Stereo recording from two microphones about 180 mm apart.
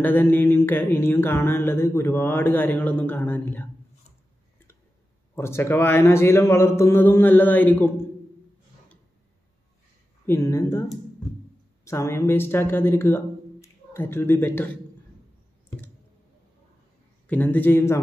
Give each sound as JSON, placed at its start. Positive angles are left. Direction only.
{"t": 0.0, "sound": "mantra", "side_deg": 10}
{"t": 5.3, "sound": "mantra", "side_deg": 15}
{"t": 10.2, "sound": "a sound", "side_deg": 15}
{"t": 11.8, "sound": "a woman's voice", "side_deg": 15}
{"t": 17.3, "sound": "mantra", "side_deg": 10}